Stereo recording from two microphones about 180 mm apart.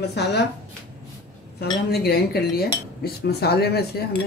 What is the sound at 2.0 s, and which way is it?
Speech, 60° left (ahead or behind).